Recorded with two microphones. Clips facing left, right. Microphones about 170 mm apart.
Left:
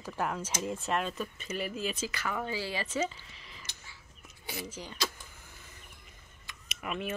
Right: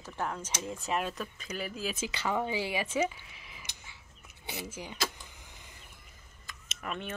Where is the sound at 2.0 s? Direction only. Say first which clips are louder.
Right 3 dB; 20° right (ahead or behind).